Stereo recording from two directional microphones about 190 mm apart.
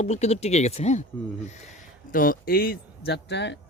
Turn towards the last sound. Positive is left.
turn(degrees=65)  # may be behind; listen again after turning